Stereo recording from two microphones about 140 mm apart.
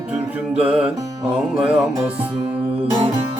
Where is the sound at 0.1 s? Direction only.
5° right (ahead or behind).